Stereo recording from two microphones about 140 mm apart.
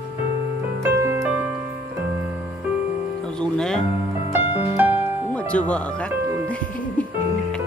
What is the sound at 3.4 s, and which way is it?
Music, 5° left (ahead or behind).